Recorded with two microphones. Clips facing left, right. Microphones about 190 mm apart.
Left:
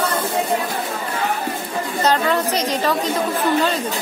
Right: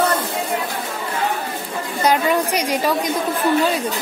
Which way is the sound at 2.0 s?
10° right (ahead or behind).